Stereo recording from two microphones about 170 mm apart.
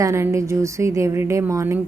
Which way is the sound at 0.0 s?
15° right (ahead or behind).